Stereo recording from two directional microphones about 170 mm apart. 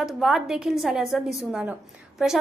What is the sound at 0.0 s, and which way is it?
A woman's voice, centre (ahead or behind).